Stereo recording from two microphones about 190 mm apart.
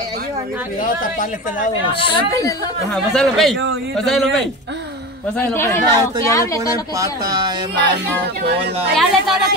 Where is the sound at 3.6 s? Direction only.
60° right (ahead or behind).